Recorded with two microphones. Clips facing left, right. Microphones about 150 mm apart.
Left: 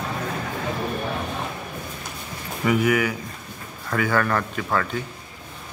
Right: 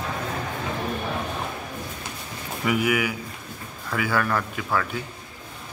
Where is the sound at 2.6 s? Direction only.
10° right (ahead or behind).